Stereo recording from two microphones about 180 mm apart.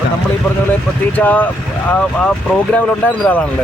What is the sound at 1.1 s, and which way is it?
Speech, 10° left (ahead or behind).